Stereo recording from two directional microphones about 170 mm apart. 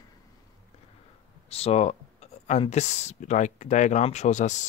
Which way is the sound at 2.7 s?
40° left (ahead or behind).